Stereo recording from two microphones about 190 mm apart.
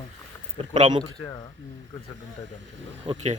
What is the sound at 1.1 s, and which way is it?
Speech, 25° left (ahead or behind).